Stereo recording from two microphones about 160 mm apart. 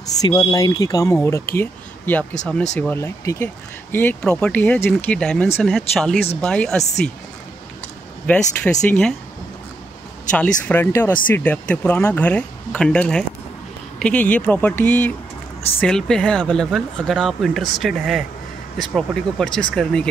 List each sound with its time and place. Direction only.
0.1 s speech: 25° left (ahead or behind); by 6.8 s 5° left (ahead or behind)
8.3 s speech: 5° left (ahead or behind)
10.3 s speech: 10° left (ahead or behind)